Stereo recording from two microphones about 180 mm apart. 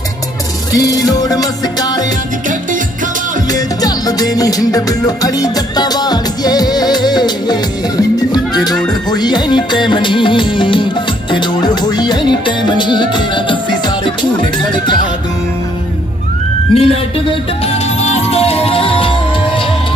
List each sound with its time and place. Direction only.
0.7 s music: 20° left (ahead or behind)
3.5 s music: 20° left (ahead or behind)
16.7 s speech: 30° left (ahead or behind)
18.0 s music: 35° left (ahead or behind)